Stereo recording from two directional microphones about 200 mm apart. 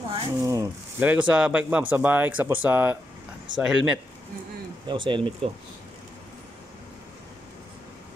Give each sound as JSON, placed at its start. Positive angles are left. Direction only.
{"t": 0.1, "sound": "speech", "side_deg": -15}
{"t": 4.8, "sound": "speech", "side_deg": -25}